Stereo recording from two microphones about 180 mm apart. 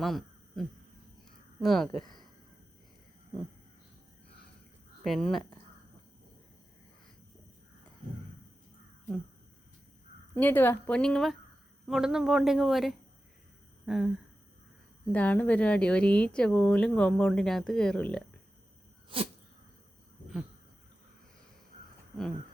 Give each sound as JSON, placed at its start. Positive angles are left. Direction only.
{"t": 0.0, "sound": "a sound", "side_deg": 0}
{"t": 1.6, "sound": "speech", "side_deg": 0}
{"t": 5.0, "sound": "speech", "side_deg": 0}
{"t": 10.3, "sound": "speech", "side_deg": 10}
{"t": 13.8, "sound": "a sound", "side_deg": 0}
{"t": 15.1, "sound": "speech", "side_deg": 10}
{"t": 19.1, "sound": "sneeze", "side_deg": -30}